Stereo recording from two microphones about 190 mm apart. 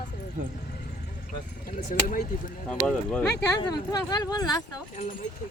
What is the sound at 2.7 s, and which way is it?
Speech, 5° left (ahead or behind).